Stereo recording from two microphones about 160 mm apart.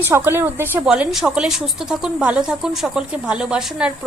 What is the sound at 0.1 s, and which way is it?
A woman's voice, 15° right (ahead or behind).